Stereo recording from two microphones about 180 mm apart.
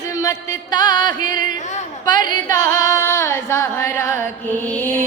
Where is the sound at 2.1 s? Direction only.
20° left (ahead or behind).